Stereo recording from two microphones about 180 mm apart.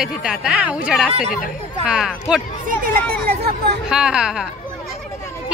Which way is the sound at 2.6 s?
55° right (ahead or behind).